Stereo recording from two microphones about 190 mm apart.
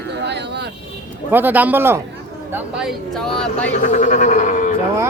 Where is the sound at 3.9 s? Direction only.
40° left (ahead or behind).